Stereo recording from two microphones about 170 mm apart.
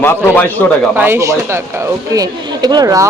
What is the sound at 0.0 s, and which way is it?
Speech, 10° left (ahead or behind).